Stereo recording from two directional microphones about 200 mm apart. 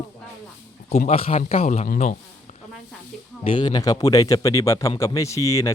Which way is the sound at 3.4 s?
25° left (ahead or behind).